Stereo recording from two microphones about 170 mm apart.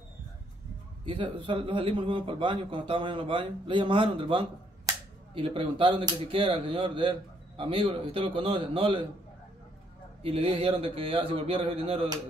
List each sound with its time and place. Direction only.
1.0 s speech: 30° right (ahead or behind)
10.2 s speech: 35° right (ahead or behind)